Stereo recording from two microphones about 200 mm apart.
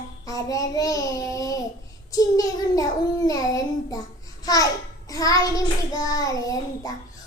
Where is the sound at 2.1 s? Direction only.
15° left (ahead or behind).